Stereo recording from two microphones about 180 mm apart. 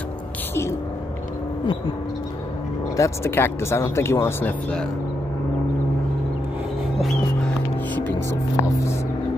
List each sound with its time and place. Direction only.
3.0 s speech: 15° left (ahead or behind)
7.0 s music: 5° left (ahead or behind)
8.3 s speech: 15° left (ahead or behind)